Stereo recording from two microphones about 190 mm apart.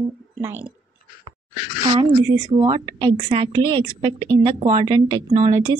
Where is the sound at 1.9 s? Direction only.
20° right (ahead or behind).